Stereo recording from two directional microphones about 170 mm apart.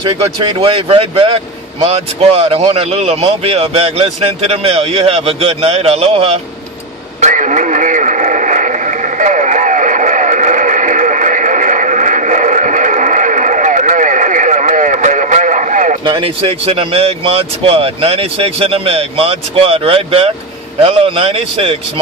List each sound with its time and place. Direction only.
0.0 s speech: 30° right (ahead or behind)
7.2 s radio: 45° right (ahead or behind)
16.1 s speech: 30° right (ahead or behind)